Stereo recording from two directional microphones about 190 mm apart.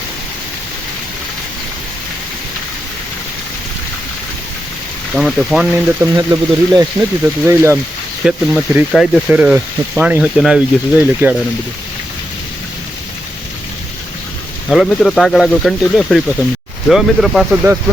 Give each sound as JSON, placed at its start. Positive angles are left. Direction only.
{"t": 5.1, "sound": "speech", "side_deg": 0}
{"t": 5.7, "sound": "speech", "side_deg": -15}
{"t": 14.7, "sound": "speech", "side_deg": 0}